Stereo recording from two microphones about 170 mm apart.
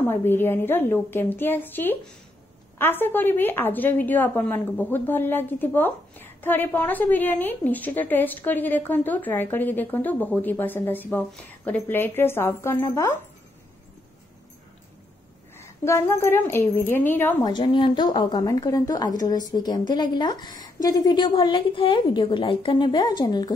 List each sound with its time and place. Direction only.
0.1 s a woman's voice: 15° left (ahead or behind)
15.5 s a woman's voice: 15° left (ahead or behind)
17.4 s a woman's voice: 25° left (ahead or behind)